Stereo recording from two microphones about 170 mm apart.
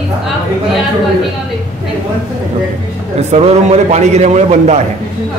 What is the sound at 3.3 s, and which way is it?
A man's voice, 40° right (ahead or behind).